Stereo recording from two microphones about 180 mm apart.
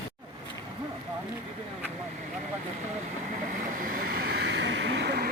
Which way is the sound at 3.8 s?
50° right (ahead or behind).